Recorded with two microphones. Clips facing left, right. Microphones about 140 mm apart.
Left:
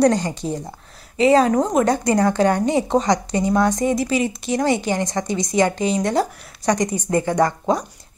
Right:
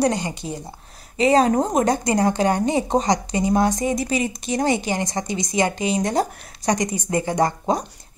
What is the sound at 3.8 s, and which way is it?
Speech, 30° left (ahead or behind).